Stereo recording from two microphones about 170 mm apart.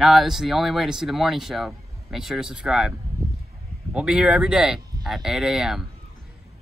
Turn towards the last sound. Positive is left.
turn(degrees=-5)  # may be behind; listen again after turning